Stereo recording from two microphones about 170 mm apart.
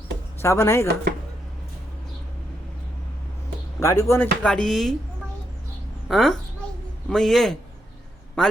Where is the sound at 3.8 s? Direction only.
15° left (ahead or behind).